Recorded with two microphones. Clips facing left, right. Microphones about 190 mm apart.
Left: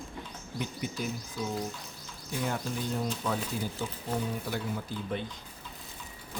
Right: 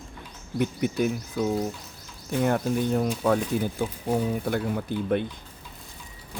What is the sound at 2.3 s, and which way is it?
Speech, 55° right (ahead or behind).